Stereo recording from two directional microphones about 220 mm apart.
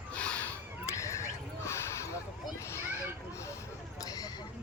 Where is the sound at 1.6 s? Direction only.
10° left (ahead or behind).